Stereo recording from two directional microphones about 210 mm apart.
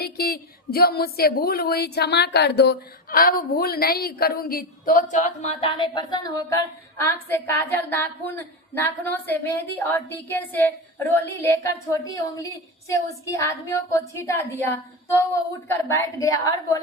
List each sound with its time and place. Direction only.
0.0 s a woman's voice: 45° left (ahead or behind); by 10.7 s 10° left (ahead or behind)
12.9 s a woman's voice: 15° left (ahead or behind)